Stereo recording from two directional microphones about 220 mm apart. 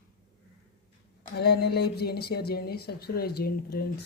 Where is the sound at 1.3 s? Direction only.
45° left (ahead or behind).